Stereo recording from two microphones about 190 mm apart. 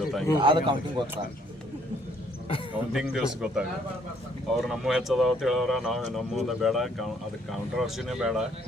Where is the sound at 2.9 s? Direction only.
5° right (ahead or behind).